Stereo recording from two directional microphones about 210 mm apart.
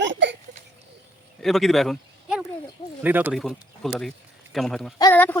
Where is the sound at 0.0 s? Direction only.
60° right (ahead or behind).